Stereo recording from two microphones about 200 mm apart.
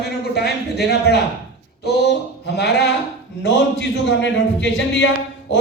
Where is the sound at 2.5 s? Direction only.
55° left (ahead or behind).